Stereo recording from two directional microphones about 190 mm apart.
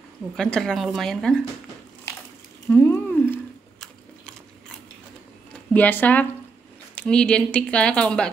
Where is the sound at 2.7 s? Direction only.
10° left (ahead or behind).